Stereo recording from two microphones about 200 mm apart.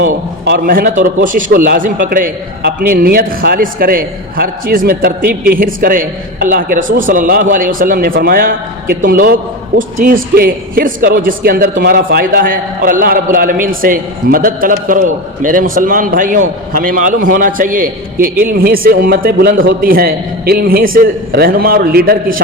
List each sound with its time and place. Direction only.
0.4 s a man's voice: 45° right (ahead or behind)